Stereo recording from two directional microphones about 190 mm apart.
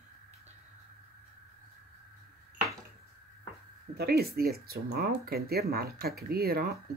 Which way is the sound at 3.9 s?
55° right (ahead or behind).